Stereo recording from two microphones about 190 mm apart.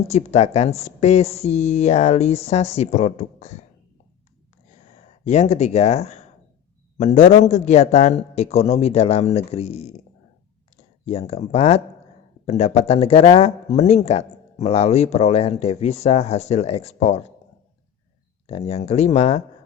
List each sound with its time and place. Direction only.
0.1 s speech: 35° left (ahead or behind)
5.2 s speech: 35° left (ahead or behind)
11.0 s speech: 35° left (ahead or behind)
18.4 s speech: 35° left (ahead or behind)